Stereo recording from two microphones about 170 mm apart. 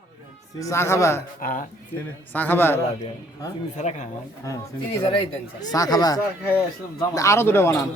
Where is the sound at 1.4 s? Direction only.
55° left (ahead or behind).